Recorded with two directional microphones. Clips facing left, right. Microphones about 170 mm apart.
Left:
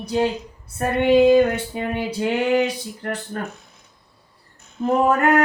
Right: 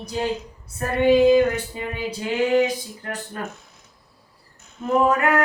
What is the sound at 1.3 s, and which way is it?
Female singing, 60° left (ahead or behind).